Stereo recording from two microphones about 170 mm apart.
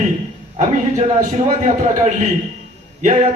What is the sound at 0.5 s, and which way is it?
A man's voice, 45° right (ahead or behind).